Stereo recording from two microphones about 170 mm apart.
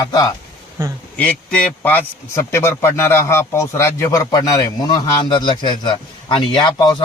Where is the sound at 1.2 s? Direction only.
10° left (ahead or behind).